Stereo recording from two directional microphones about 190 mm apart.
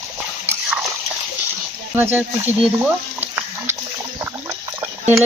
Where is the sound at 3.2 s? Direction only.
10° right (ahead or behind).